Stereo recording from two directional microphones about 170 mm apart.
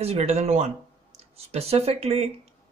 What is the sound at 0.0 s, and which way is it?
Speech, 35° right (ahead or behind).